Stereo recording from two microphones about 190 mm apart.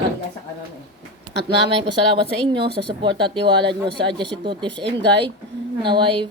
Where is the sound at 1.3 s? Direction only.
65° right (ahead or behind).